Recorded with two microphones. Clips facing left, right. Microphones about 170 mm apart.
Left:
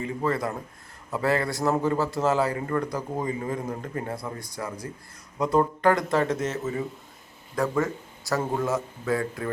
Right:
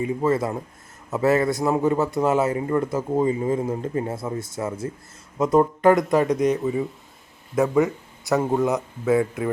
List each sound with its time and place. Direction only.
0.0 s a man's voice: 20° right (ahead or behind)
6.6 s speech: centre (ahead or behind)
7.5 s a man's voice: 20° right (ahead or behind)